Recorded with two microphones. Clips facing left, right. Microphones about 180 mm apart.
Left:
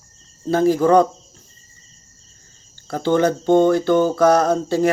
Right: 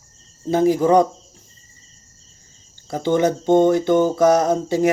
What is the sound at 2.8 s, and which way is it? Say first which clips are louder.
Mantra: left 1 dB; 15° right (ahead or behind).